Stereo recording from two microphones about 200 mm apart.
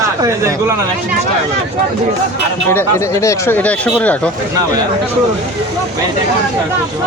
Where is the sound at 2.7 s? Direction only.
10° left (ahead or behind).